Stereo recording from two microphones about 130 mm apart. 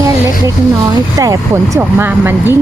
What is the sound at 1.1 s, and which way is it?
Speech, 25° right (ahead or behind).